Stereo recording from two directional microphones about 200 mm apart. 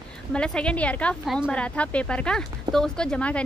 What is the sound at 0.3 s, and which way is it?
A woman's voice, 5° left (ahead or behind).